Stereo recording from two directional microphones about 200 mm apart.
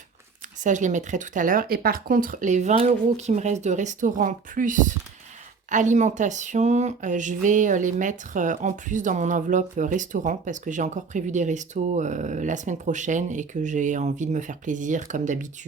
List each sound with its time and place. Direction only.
0.6 s speech: 40° right (ahead or behind)